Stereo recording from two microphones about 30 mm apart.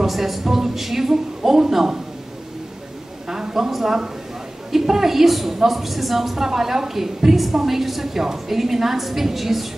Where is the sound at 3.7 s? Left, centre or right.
Centre.